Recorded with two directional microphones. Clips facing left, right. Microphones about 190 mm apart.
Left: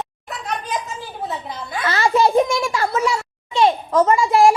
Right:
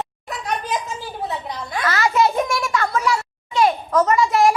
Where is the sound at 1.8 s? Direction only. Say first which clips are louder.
Left 2 dB; 30° left (ahead or behind).